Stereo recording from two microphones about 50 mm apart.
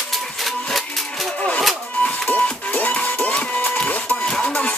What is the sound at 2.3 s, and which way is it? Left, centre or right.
Music, left.